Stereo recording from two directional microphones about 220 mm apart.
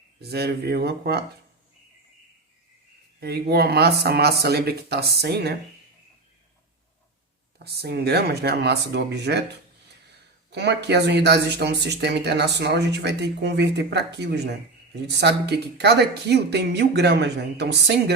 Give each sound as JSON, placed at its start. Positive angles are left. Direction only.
{"t": 0.2, "sound": "speech", "side_deg": -45}
{"t": 3.2, "sound": "speech", "side_deg": -45}
{"t": 7.6, "sound": "speech", "side_deg": -45}
{"t": 10.5, "sound": "speech", "side_deg": -50}